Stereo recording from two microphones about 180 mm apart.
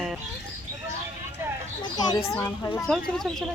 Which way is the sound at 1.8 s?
20° left (ahead or behind).